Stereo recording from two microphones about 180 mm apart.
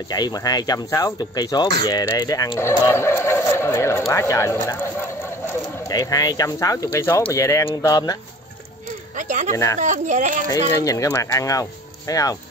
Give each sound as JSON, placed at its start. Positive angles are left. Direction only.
{"t": 0.1, "sound": "speech", "side_deg": 20}
{"t": 9.1, "sound": "speech", "side_deg": -45}
{"t": 10.8, "sound": "speech", "side_deg": 20}